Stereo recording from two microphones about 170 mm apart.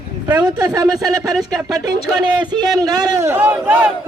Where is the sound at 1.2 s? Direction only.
Centre (ahead or behind).